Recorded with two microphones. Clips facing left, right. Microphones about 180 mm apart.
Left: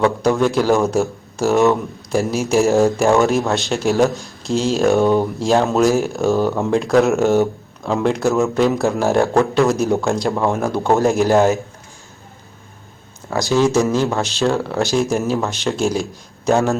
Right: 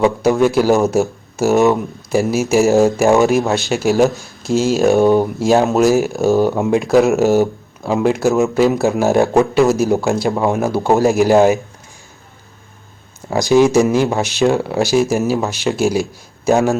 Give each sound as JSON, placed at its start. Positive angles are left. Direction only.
{"t": 0.0, "sound": "speech", "side_deg": -10}
{"t": 4.9, "sound": "speech", "side_deg": -15}
{"t": 6.4, "sound": "speech", "side_deg": -15}
{"t": 6.7, "sound": "speech", "side_deg": -5}
{"t": 13.3, "sound": "speech", "side_deg": -15}